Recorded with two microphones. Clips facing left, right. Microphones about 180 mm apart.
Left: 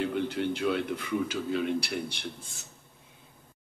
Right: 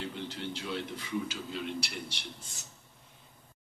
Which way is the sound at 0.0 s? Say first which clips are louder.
Left 9 dB; 55° left (ahead or behind).